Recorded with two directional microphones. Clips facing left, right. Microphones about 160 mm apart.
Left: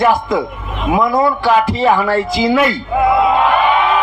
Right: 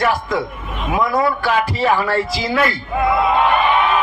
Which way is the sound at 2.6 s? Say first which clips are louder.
Left 4 dB; 20° left (ahead or behind).